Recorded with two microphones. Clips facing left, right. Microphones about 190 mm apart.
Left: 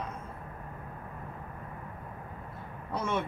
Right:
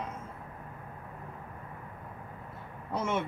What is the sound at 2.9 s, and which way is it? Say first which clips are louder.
Speech: right 1 dB; 25° right (ahead or behind).